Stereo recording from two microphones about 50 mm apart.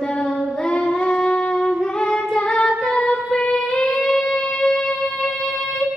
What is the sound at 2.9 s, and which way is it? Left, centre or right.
Music, left.